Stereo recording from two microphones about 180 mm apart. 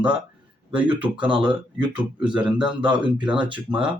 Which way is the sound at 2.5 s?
25° right (ahead or behind).